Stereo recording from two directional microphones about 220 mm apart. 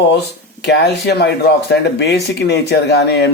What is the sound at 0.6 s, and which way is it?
Speech, 50° left (ahead or behind).